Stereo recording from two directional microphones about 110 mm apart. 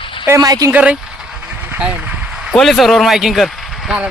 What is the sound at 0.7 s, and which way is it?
Speech, 10° right (ahead or behind).